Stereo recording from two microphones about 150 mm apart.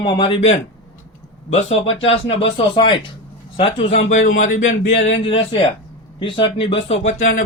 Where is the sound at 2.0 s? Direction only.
35° left (ahead or behind); by 4.9 s 55° left (ahead or behind).